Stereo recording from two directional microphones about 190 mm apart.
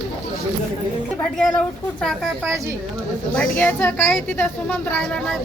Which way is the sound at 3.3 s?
10° left (ahead or behind).